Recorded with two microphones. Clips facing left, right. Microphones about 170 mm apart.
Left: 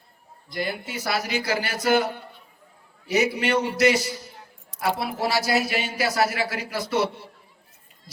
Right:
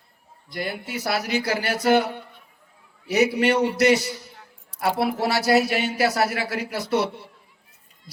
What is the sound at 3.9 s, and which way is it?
A man's voice, 65° right (ahead or behind).